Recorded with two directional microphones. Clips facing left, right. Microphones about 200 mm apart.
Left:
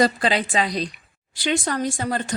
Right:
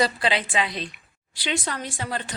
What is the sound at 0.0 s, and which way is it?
A woman's voice, 45° left (ahead or behind).